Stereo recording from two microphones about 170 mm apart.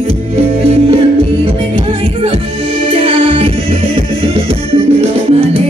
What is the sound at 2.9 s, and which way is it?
Music, 30° right (ahead or behind).